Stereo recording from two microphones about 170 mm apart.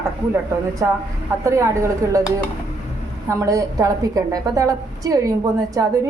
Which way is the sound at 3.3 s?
20° right (ahead or behind).